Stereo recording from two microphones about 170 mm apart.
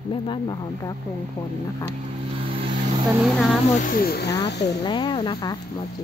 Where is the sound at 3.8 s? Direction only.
60° left (ahead or behind).